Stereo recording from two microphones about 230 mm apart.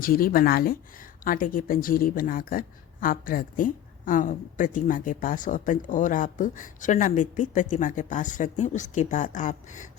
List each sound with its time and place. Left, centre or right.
0.0 s speech: left